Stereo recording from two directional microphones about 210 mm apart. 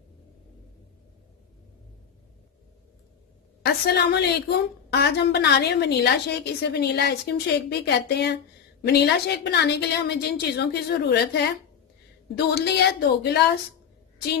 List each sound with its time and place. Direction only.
3.6 s a woman's voice: 50° left (ahead or behind)